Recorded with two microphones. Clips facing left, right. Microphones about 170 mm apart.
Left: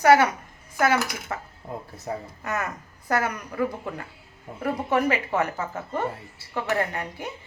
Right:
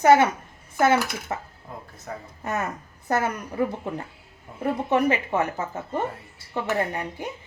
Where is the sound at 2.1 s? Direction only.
20° left (ahead or behind).